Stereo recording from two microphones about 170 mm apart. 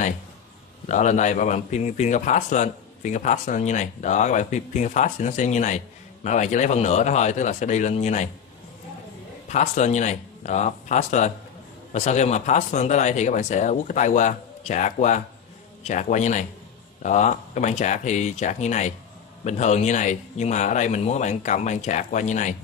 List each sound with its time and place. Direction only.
0.8 s a man's voice: 45° left (ahead or behind)
9.5 s a man's voice: 40° left (ahead or behind)